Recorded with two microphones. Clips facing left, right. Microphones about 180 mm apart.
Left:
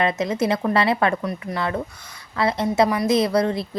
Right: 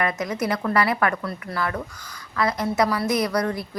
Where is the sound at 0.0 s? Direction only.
25° left (ahead or behind).